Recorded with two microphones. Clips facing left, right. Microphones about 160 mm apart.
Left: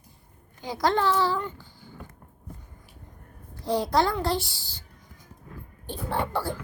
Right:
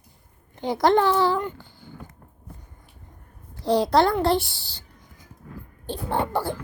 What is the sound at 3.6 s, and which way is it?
A child's voice, 75° right (ahead or behind).